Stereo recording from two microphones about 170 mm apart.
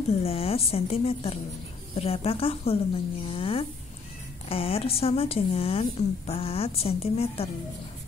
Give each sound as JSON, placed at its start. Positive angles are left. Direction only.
{"t": 0.2, "sound": "speech", "side_deg": 35}